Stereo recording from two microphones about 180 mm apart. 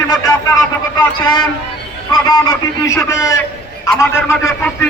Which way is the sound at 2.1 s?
20° left (ahead or behind).